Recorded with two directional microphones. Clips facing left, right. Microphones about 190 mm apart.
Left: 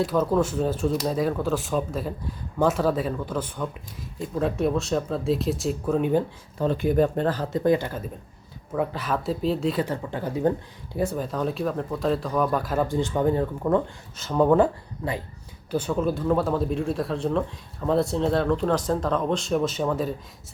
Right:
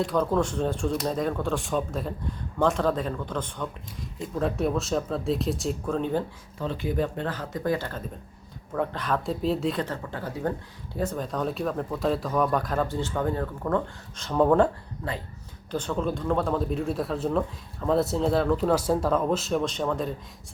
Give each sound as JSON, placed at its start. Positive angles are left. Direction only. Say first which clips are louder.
{"t": 0.0, "sound": "speech", "louder": "left 2 dB", "side_deg": 5}
{"t": 6.6, "sound": "speech", "louder": "left 6 dB", "side_deg": 50}
{"t": 7.6, "sound": "speech", "louder": "left 5 dB", "side_deg": 20}
{"t": 14.2, "sound": "speech", "louder": "left 1 dB", "side_deg": 0}